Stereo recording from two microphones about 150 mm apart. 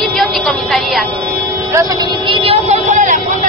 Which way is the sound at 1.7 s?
25° right (ahead or behind).